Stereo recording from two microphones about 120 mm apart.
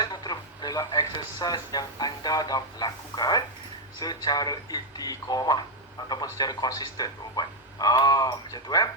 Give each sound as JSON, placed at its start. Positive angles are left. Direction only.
{"t": 0.0, "sound": "a man's voice", "side_deg": 35}